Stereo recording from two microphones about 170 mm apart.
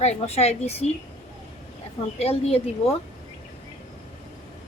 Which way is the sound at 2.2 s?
35° left (ahead or behind).